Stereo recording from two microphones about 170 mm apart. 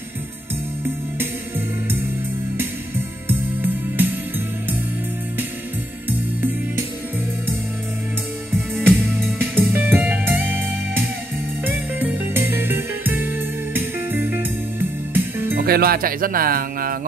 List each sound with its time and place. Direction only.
3.3 s music: 10° right (ahead or behind)
6.0 s music: 10° right (ahead or behind)
8.8 s music: 10° right (ahead or behind)
15.5 s speech: 65° right (ahead or behind)